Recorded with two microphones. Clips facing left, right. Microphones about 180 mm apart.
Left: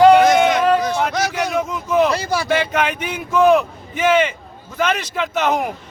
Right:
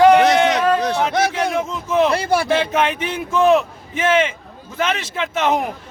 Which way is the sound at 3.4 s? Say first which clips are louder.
Left 1 dB; centre (ahead or behind).